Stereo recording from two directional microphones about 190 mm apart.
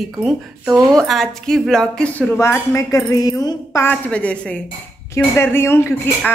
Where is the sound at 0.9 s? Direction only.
Centre (ahead or behind).